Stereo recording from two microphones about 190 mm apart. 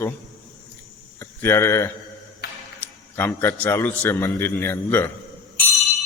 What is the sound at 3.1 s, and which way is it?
A man's voice, 10° left (ahead or behind).